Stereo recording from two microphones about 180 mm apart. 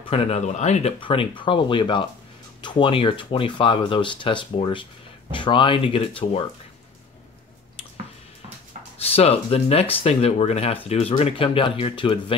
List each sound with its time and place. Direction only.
0.1 s speech: 35° left (ahead or behind)
8.9 s speech: 35° left (ahead or behind)